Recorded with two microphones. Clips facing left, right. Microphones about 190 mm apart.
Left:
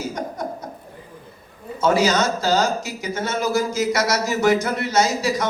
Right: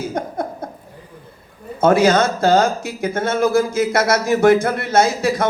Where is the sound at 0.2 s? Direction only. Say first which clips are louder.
Right 4 dB; 55° right (ahead or behind).